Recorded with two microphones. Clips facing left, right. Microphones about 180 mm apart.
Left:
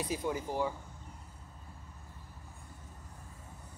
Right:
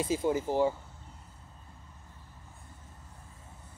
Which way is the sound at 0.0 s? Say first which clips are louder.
Right 6 dB; 25° right (ahead or behind).